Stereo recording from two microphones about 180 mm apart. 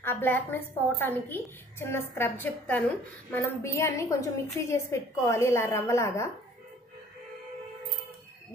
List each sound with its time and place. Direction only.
0.0 s a woman's voice: 10° left (ahead or behind)